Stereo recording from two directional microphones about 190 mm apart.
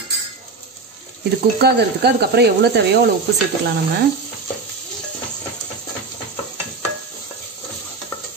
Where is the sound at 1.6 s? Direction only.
60° right (ahead or behind).